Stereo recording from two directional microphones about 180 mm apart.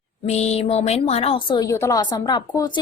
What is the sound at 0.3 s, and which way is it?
A woman's voice, 40° left (ahead or behind).